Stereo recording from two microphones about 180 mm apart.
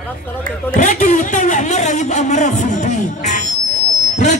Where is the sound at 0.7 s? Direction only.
45° left (ahead or behind).